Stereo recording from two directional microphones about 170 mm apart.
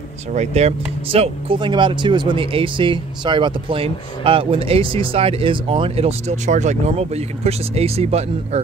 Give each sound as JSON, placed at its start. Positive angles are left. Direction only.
{"t": 0.3, "sound": "speech", "side_deg": -40}